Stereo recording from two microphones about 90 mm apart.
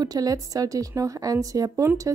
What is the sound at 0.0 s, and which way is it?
A woman's voice, 45° right (ahead or behind).